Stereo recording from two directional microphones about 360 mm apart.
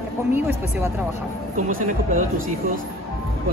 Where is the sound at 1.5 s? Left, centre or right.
Right.